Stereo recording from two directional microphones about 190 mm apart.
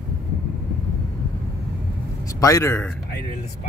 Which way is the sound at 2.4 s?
15° left (ahead or behind).